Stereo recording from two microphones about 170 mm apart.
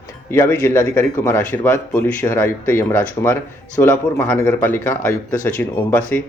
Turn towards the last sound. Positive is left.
turn(degrees=10)  # may be behind; listen again after turning